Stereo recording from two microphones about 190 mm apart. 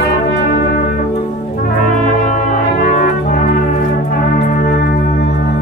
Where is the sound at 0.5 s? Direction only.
55° left (ahead or behind).